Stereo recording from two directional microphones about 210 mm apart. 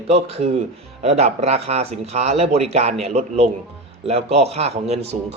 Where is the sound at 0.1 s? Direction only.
30° right (ahead or behind).